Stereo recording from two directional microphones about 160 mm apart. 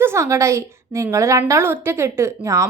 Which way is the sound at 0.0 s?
15° right (ahead or behind).